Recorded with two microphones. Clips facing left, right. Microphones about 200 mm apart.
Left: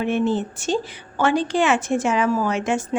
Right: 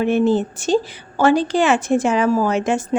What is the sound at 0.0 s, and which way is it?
A woman's voice, 40° right (ahead or behind).